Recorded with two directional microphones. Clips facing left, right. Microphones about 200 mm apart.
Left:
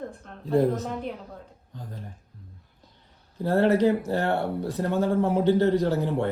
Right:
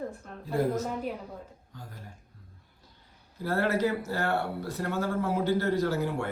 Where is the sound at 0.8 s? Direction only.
5° right (ahead or behind).